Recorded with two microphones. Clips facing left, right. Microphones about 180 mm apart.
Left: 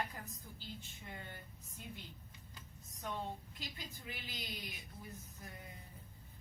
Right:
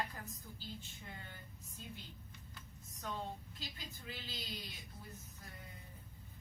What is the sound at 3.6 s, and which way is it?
Speech, 15° left (ahead or behind).